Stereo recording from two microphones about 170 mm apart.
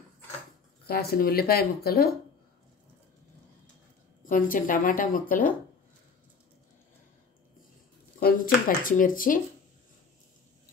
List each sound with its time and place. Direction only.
0.8 s speech: 65° left (ahead or behind)
4.2 s a woman's voice: 50° left (ahead or behind)
8.2 s speech: 55° left (ahead or behind)